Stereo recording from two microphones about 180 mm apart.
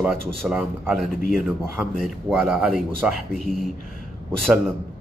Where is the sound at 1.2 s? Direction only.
45° left (ahead or behind).